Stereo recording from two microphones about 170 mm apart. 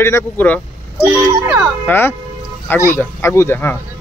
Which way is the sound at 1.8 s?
15° left (ahead or behind).